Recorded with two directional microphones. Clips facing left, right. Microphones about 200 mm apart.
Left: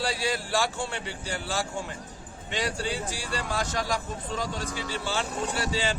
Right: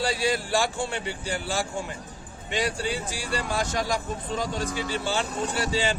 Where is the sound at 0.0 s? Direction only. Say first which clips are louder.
Right 3 dB; 15° right (ahead or behind).